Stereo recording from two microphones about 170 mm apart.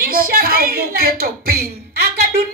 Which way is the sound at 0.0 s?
60° right (ahead or behind).